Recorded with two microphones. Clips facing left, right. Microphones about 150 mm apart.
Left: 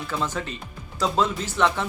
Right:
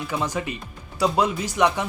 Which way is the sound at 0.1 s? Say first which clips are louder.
Right 1 dB; 15° right (ahead or behind).